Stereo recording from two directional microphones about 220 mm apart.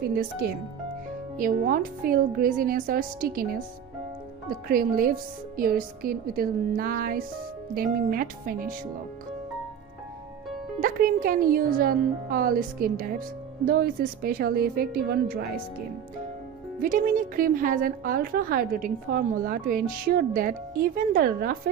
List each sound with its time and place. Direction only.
0.0 s a woman's voice: 45° right (ahead or behind)
4.7 s a woman's voice: 40° right (ahead or behind)
10.8 s a woman's voice: 40° right (ahead or behind)
16.8 s a woman's voice: 35° right (ahead or behind)